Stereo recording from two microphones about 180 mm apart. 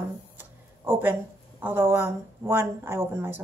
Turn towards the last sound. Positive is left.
turn(degrees=-15)  # may be behind; listen again after turning